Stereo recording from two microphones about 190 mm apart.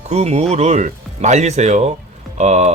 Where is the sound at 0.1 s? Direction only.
35° right (ahead or behind).